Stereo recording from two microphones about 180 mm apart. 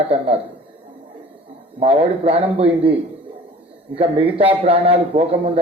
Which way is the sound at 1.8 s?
35° right (ahead or behind).